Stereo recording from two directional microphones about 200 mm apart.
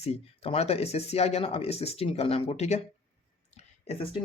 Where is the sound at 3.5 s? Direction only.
30° left (ahead or behind).